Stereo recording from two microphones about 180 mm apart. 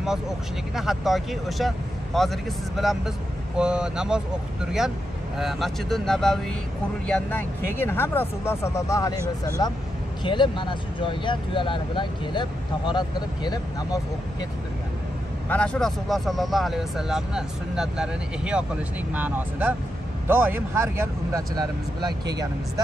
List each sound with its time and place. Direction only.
0.7 s speech: centre (ahead or behind); by 14.0 s 20° left (ahead or behind)
15.4 s speech: 5° left (ahead or behind); by 22.5 s 20° right (ahead or behind)